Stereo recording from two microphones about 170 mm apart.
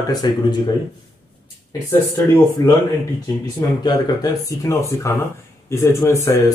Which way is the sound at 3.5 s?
25° left (ahead or behind).